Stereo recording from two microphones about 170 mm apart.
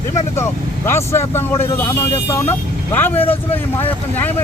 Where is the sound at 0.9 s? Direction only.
15° left (ahead or behind).